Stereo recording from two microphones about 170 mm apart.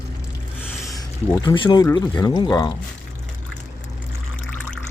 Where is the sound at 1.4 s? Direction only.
25° left (ahead or behind).